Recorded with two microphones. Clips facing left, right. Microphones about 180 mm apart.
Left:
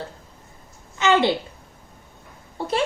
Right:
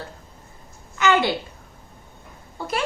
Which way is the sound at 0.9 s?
25° left (ahead or behind).